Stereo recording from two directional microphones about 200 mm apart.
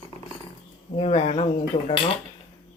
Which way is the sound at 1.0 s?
30° left (ahead or behind).